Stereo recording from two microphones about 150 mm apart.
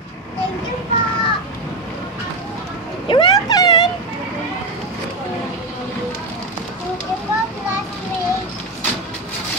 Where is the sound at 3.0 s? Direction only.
30° left (ahead or behind).